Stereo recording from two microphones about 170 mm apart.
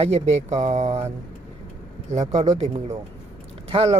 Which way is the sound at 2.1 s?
40° right (ahead or behind).